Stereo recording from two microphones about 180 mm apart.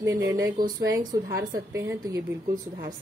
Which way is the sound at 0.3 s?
20° right (ahead or behind).